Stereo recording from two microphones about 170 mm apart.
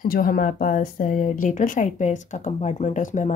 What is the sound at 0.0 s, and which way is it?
Speech, 55° left (ahead or behind).